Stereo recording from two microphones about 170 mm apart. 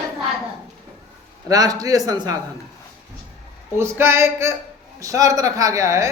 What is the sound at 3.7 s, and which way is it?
A man's voice, 15° right (ahead or behind).